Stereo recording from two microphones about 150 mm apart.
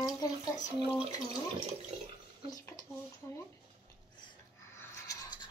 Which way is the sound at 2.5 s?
25° left (ahead or behind).